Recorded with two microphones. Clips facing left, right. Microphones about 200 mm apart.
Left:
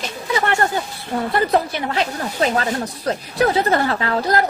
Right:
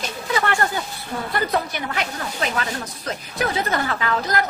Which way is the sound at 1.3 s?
30° left (ahead or behind).